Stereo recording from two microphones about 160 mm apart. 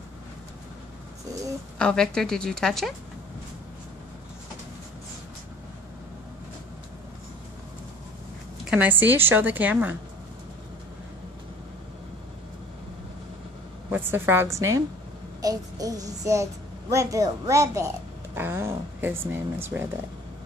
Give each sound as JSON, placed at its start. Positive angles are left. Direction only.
{"t": 1.8, "sound": "a woman's voice", "side_deg": 5}
{"t": 8.6, "sound": "a woman's voice", "side_deg": -10}
{"t": 13.8, "sound": "a woman's voice", "side_deg": -10}
{"t": 15.4, "sound": "child singing", "side_deg": -20}
{"t": 16.9, "sound": "a woman's voice", "side_deg": -20}